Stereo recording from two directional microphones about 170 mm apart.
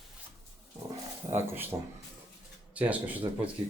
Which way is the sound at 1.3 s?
10° right (ahead or behind).